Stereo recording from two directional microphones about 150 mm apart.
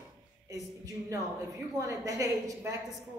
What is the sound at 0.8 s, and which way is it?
A woman's voice, 20° right (ahead or behind).